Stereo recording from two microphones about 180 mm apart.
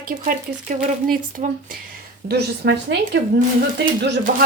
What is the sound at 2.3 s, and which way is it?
Speech, 65° right (ahead or behind).